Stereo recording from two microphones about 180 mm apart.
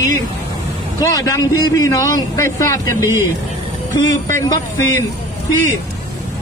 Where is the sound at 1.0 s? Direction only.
20° left (ahead or behind).